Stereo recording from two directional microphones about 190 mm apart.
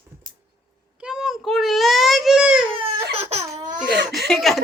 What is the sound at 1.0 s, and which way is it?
Child singing, 5° right (ahead or behind).